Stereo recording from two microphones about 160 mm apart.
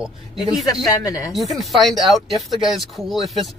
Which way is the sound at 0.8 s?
20° left (ahead or behind).